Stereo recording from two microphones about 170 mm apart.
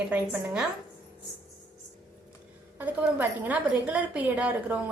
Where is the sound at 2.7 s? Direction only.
10° right (ahead or behind).